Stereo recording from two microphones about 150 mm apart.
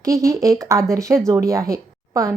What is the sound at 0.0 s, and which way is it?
A woman's voice, 20° right (ahead or behind).